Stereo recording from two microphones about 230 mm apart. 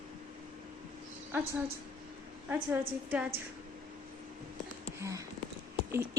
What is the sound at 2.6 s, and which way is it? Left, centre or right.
Speech, right.